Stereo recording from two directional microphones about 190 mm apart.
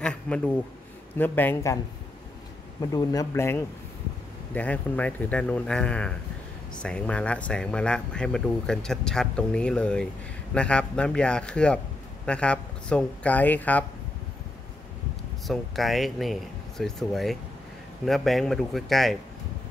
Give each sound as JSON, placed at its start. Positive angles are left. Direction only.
{"t": 0.0, "sound": "a sound", "side_deg": 5}
{"t": 1.1, "sound": "speech", "side_deg": 10}
{"t": 2.8, "sound": "speech", "side_deg": 20}
{"t": 15.4, "sound": "speech", "side_deg": 0}